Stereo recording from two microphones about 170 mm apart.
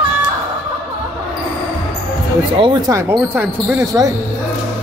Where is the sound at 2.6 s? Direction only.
25° right (ahead or behind).